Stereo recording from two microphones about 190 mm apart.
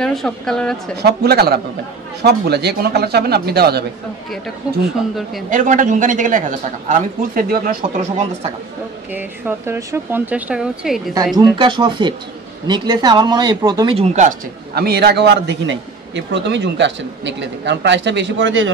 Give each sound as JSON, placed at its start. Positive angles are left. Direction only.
{"t": 0.0, "sound": "speech", "side_deg": 0}
{"t": 1.0, "sound": "a man's voice", "side_deg": -55}
{"t": 5.5, "sound": "a man's voice", "side_deg": -45}
{"t": 9.1, "sound": "speech", "side_deg": -10}
{"t": 11.5, "sound": "speech", "side_deg": -25}
{"t": 14.8, "sound": "a man's voice", "side_deg": -60}